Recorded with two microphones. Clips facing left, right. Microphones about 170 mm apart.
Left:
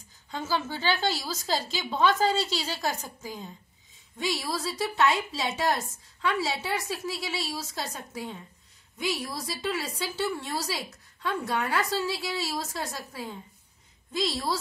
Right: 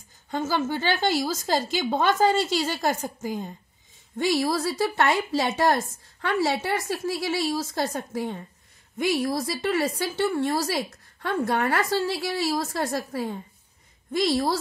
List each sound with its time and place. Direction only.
0.3 s speech: 50° right (ahead or behind)